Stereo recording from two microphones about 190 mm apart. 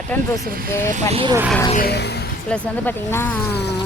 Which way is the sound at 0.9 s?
35° right (ahead or behind).